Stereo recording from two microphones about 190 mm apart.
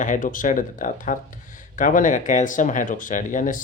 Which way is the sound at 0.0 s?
45° left (ahead or behind).